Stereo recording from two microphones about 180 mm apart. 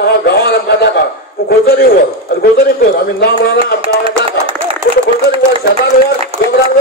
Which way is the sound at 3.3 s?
30° right (ahead or behind).